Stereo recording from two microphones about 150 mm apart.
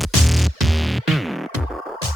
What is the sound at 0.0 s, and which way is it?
Music, centre (ahead or behind).